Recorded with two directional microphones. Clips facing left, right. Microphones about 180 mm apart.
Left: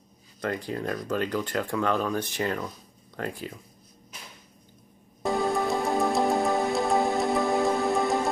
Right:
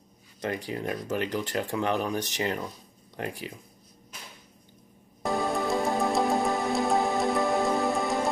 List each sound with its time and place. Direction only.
0.4 s speech: 15° right (ahead or behind)
5.2 s music: centre (ahead or behind)